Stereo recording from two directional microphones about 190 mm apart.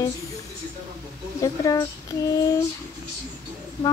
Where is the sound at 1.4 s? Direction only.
20° left (ahead or behind).